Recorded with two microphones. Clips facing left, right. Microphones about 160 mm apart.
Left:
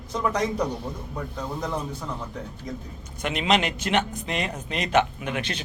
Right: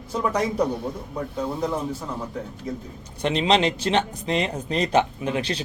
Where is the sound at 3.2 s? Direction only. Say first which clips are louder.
Right 3 dB; 30° right (ahead or behind).